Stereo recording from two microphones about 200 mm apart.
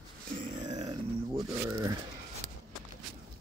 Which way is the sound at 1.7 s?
15° right (ahead or behind).